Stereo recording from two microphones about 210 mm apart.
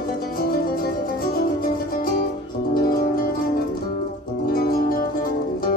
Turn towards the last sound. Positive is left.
turn(degrees=45)  # may be behind; listen again after turning